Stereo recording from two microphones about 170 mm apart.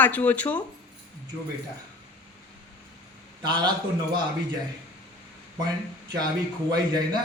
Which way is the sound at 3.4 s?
25° right (ahead or behind).